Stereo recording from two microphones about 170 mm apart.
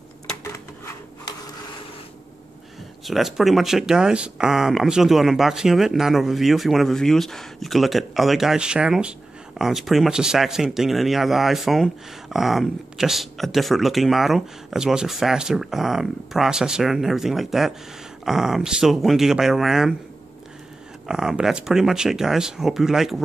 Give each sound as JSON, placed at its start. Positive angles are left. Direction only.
{"t": 0.4, "sound": "a sound", "side_deg": 20}
{"t": 3.1, "sound": "speech", "side_deg": 0}
{"t": 21.1, "sound": "speech", "side_deg": -5}